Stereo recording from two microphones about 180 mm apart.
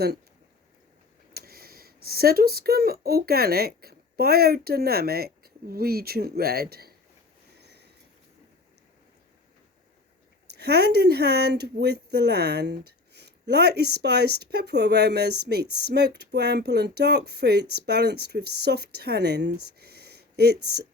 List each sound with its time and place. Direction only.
1.3 s speech: 55° right (ahead or behind)
7.6 s a sound: 65° right (ahead or behind)
10.5 s speech: 65° right (ahead or behind)